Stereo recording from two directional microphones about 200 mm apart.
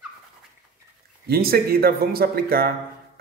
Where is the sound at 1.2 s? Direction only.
50° right (ahead or behind).